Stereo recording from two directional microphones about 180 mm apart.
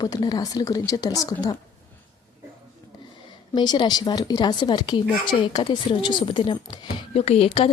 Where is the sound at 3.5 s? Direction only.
25° left (ahead or behind).